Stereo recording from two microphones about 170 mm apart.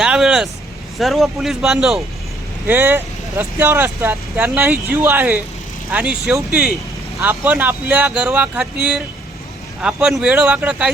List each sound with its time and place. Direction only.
0.0 s vehicle: 5° right (ahead or behind)
0.9 s speech: centre (ahead or behind)